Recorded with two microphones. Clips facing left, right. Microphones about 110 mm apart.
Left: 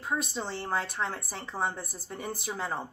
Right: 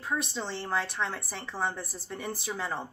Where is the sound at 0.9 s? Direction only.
25° left (ahead or behind).